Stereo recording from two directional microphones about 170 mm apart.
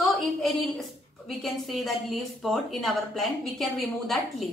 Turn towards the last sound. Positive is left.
turn(degrees=0)  # may be behind; listen again after turning